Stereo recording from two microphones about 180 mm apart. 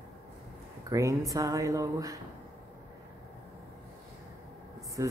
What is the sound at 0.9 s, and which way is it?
A woman's voice, 20° right (ahead or behind).